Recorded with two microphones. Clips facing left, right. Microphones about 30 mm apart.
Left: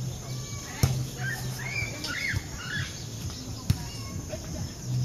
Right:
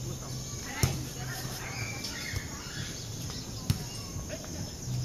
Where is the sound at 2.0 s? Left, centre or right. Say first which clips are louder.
Left 7 dB; left.